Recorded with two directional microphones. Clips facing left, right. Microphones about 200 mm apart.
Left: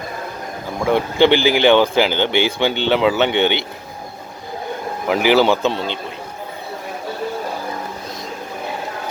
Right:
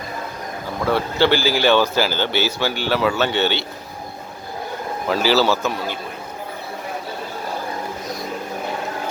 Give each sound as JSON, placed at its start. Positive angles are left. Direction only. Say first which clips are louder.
{"t": 0.9, "sound": "speech", "louder": "left 4 dB", "side_deg": 20}
{"t": 5.0, "sound": "a man's voice", "louder": "left 3 dB", "side_deg": 15}